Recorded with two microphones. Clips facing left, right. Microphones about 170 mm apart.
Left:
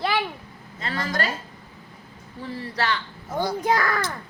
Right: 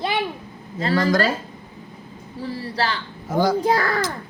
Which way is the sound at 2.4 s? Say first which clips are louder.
Right 3 dB; 35° right (ahead or behind).